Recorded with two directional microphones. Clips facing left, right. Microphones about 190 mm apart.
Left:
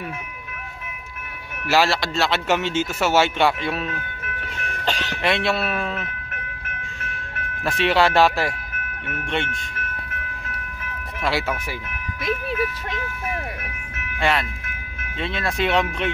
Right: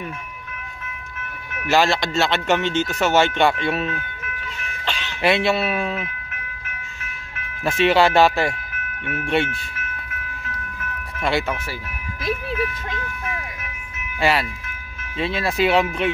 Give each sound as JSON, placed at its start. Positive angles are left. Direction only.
{"t": 1.7, "sound": "speech", "side_deg": 5}
{"t": 4.8, "sound": "speech", "side_deg": 40}
{"t": 5.2, "sound": "speech", "side_deg": 0}
{"t": 7.6, "sound": "speech", "side_deg": 0}
{"t": 11.1, "sound": "speech", "side_deg": 5}
{"t": 15.1, "sound": "speech", "side_deg": -5}